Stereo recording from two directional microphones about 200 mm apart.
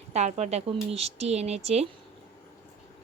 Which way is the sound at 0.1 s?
35° right (ahead or behind).